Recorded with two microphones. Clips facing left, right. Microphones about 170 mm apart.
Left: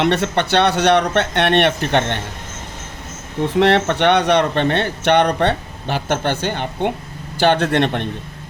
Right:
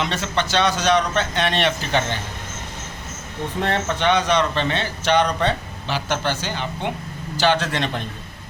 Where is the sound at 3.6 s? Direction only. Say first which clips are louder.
Left 8 dB; 75° left (ahead or behind); by 8.1 s 60° left (ahead or behind).